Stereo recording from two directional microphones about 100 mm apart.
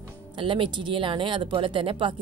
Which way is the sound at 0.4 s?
55° right (ahead or behind).